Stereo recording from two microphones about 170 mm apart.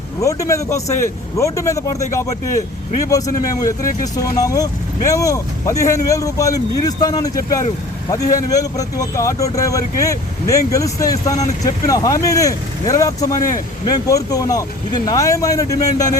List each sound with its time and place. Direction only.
0.2 s speech: 20° left (ahead or behind)